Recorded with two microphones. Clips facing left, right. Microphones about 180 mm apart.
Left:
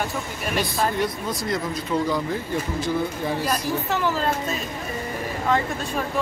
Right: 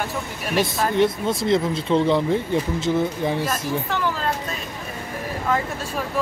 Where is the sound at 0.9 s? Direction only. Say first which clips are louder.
Right 6 dB; 25° right (ahead or behind).